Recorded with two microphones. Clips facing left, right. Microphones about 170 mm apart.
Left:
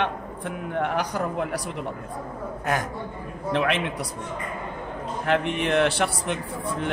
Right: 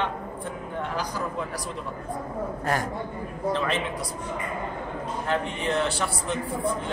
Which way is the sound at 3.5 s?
65° left (ahead or behind).